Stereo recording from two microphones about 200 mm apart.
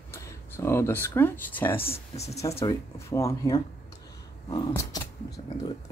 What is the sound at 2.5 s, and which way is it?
Speech, 15° left (ahead or behind).